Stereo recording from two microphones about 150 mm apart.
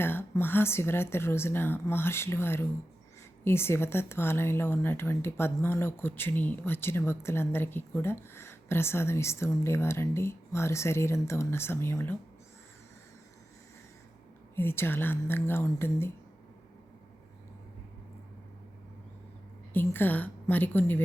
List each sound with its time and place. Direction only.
0.0 s speech: 15° left (ahead or behind)
14.5 s speech: 15° left (ahead or behind)
19.7 s speech: 15° left (ahead or behind)